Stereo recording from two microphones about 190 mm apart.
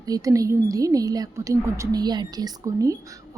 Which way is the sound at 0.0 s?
20° right (ahead or behind).